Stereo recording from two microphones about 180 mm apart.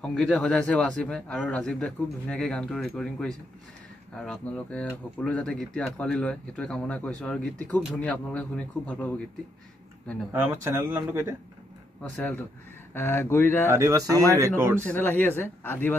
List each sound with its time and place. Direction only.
0.0 s speech: 5° left (ahead or behind)
10.3 s speech: 10° right (ahead or behind)
12.0 s speech: 10° left (ahead or behind)
13.7 s speech: 15° right (ahead or behind)
14.8 s speech: 10° left (ahead or behind)